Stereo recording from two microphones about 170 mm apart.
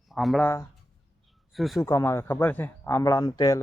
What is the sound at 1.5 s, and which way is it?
Speech, centre (ahead or behind).